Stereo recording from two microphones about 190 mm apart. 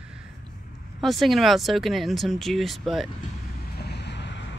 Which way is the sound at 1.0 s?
Centre (ahead or behind).